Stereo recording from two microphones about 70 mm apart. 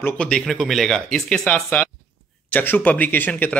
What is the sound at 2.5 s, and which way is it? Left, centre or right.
Speech, left.